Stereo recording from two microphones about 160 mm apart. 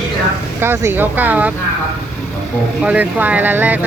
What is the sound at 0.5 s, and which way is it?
Speech, 15° right (ahead or behind).